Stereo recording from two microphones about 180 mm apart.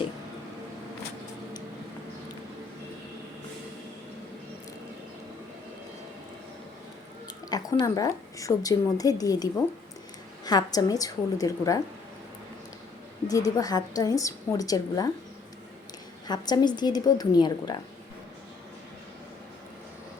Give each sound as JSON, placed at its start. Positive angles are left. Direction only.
{"t": 7.5, "sound": "a woman's voice", "side_deg": 20}
{"t": 13.2, "sound": "a woman's voice", "side_deg": 20}
{"t": 16.2, "sound": "a woman's voice", "side_deg": 20}